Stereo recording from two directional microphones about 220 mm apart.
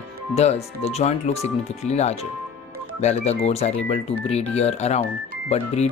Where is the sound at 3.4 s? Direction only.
30° left (ahead or behind).